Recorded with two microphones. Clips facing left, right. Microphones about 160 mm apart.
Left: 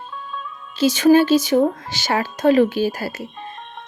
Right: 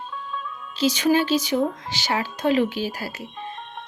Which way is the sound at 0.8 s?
45° left (ahead or behind).